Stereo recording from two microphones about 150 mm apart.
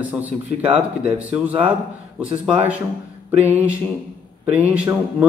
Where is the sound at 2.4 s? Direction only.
10° right (ahead or behind).